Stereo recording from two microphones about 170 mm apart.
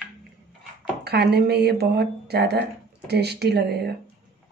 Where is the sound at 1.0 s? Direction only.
70° right (ahead or behind).